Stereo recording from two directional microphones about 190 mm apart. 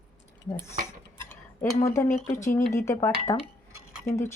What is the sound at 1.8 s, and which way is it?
Speech, 15° left (ahead or behind).